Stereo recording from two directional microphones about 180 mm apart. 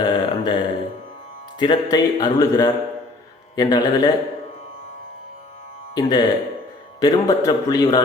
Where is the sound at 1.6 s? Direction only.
25° left (ahead or behind).